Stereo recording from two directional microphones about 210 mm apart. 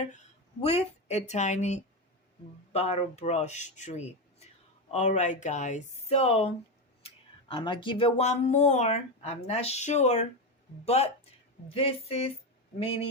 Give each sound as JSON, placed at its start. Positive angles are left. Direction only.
{"t": 0.6, "sound": "speech", "side_deg": 30}